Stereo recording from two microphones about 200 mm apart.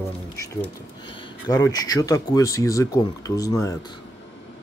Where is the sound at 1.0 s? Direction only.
20° left (ahead or behind).